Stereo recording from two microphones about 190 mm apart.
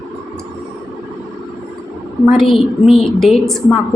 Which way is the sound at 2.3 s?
Centre (ahead or behind).